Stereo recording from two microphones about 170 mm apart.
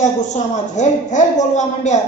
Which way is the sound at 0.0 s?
45° left (ahead or behind).